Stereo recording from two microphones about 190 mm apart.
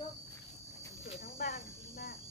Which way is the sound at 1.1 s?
50° left (ahead or behind).